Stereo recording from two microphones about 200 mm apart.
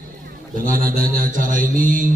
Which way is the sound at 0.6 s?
45° right (ahead or behind).